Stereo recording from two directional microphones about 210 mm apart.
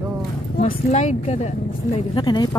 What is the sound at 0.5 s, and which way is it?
Speech, 40° left (ahead or behind).